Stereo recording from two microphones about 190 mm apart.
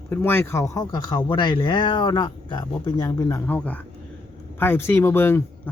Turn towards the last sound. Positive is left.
turn(degrees=10)  # may be behind; listen again after turning